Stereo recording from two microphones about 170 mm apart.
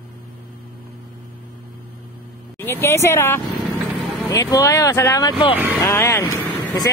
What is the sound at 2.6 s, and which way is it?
Speech, 15° left (ahead or behind).